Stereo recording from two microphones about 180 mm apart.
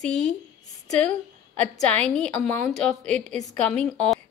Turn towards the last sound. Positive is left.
turn(degrees=5)  # may be behind; listen again after turning